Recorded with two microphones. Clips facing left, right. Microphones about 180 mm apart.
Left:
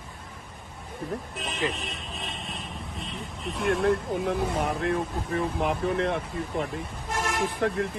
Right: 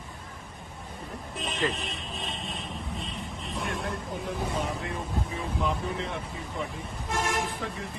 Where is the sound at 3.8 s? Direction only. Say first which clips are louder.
Left 9 dB; 65° left (ahead or behind).